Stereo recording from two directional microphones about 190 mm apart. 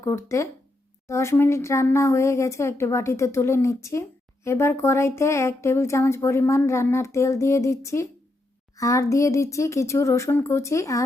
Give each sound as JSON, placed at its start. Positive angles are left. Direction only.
{"t": 0.0, "sound": "speech", "side_deg": 15}